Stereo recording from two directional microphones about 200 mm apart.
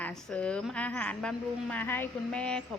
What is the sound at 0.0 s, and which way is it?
A woman's voice, centre (ahead or behind).